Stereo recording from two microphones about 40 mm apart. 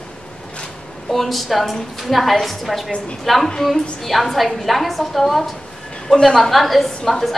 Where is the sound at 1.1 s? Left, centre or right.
Centre.